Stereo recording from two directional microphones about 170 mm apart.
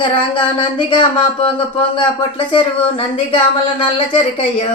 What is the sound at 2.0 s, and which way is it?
Speech, 30° left (ahead or behind).